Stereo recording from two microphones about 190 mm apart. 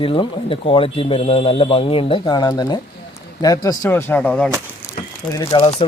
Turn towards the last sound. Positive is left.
turn(degrees=25)  # may be behind; listen again after turning